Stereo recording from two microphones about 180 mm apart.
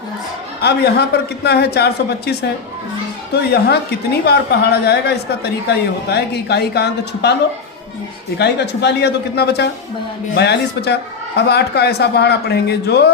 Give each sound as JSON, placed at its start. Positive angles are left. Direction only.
{"t": 0.6, "sound": "a man's voice", "side_deg": 65}
{"t": 3.3, "sound": "a man's voice", "side_deg": 65}
{"t": 8.4, "sound": "a man's voice", "side_deg": 70}